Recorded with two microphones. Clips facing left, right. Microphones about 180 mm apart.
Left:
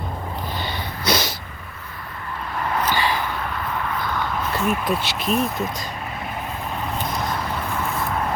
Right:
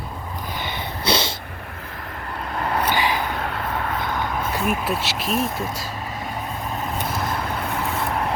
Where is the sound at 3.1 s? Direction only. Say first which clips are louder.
Right 1 dB; 45° right (ahead or behind).